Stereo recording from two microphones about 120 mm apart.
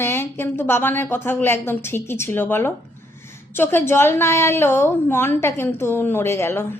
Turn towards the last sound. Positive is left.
turn(degrees=20)  # may be behind; listen again after turning